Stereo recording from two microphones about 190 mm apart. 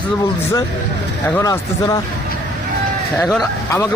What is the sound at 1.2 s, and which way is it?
Speech, 15° left (ahead or behind).